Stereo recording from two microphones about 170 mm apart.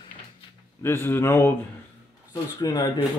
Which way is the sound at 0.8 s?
15° left (ahead or behind).